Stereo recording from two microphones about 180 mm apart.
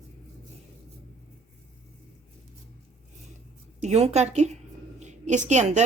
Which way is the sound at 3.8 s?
35° right (ahead or behind).